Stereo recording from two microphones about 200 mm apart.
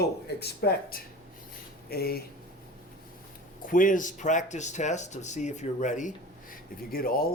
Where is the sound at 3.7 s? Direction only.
40° left (ahead or behind).